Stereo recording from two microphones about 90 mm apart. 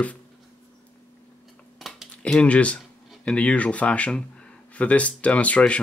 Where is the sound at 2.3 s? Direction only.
10° left (ahead or behind).